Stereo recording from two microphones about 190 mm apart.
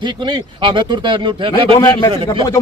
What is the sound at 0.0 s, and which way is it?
Speech, 25° right (ahead or behind).